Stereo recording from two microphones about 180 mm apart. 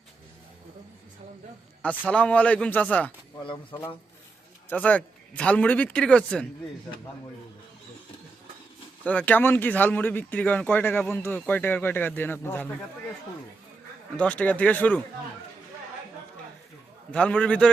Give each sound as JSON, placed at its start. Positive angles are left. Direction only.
{"t": 2.0, "sound": "speech", "side_deg": 5}
{"t": 3.4, "sound": "speech", "side_deg": 30}
{"t": 4.7, "sound": "speech", "side_deg": 10}
{"t": 9.0, "sound": "speech", "side_deg": 10}
{"t": 14.2, "sound": "speech", "side_deg": 5}
{"t": 17.1, "sound": "speech", "side_deg": 5}